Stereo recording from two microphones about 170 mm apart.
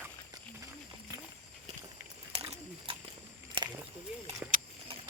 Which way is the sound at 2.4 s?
35° right (ahead or behind).